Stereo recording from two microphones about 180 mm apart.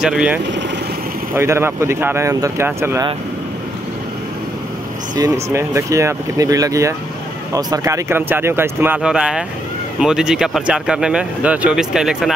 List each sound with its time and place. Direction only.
0.0 s speech: 5° right (ahead or behind)
5.1 s speech: 15° right (ahead or behind)